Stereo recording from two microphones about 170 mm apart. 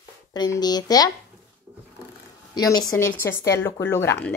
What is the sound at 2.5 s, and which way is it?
A woman's voice, 20° left (ahead or behind).